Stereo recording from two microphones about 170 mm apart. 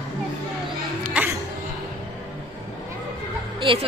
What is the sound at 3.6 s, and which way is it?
Speech, 30° right (ahead or behind).